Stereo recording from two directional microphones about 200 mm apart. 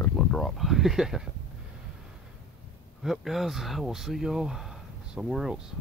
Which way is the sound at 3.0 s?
Centre (ahead or behind).